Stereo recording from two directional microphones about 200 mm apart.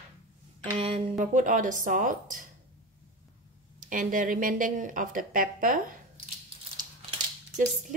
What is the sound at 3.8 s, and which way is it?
Speech, 40° right (ahead or behind).